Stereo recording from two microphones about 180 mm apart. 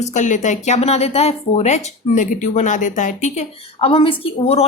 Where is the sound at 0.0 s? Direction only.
40° left (ahead or behind).